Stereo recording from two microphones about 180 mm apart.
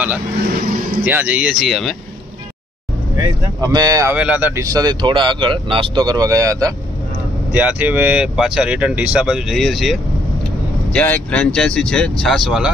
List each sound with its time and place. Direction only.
0.5 s speech: 50° right (ahead or behind)
1.0 s speech: 10° right (ahead or behind)
3.6 s speech: 20° right (ahead or behind)
4.2 s speech: 10° right (ahead or behind)
7.5 s speech: 10° right (ahead or behind)